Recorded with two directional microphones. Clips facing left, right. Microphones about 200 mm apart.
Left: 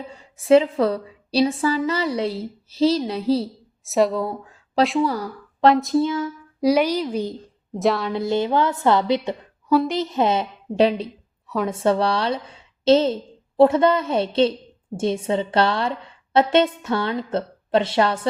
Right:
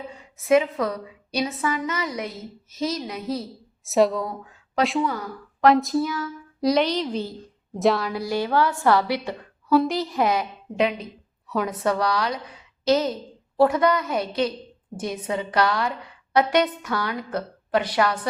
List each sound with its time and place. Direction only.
0.2 s a woman's voice: 30° left (ahead or behind)
3.8 s speech: centre (ahead or behind)
4.2 s speech: 30° left (ahead or behind)
4.8 s speech: centre (ahead or behind)
5.0 s speech: 35° left (ahead or behind)
5.6 s speech: centre (ahead or behind)
6.0 s a woman's voice: 25° left (ahead or behind)
6.6 s a woman's voice: 10° left (ahead or behind)
7.8 s speech: centre (ahead or behind)
8.1 s a woman's voice: 20° left (ahead or behind)
9.7 s speech: centre (ahead or behind)
10.0 s a woman's voice: 25° left (ahead or behind)
11.4 s a woman's voice: centre (ahead or behind)
11.7 s a woman's voice: 25° left (ahead or behind)